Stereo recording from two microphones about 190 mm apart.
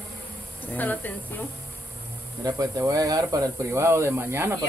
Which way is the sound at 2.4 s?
15° right (ahead or behind).